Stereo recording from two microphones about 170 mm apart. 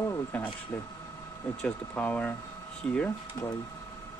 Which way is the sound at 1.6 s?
10° left (ahead or behind).